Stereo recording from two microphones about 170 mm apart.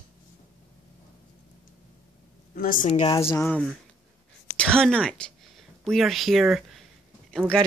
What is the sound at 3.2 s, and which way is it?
Speech, 15° left (ahead or behind).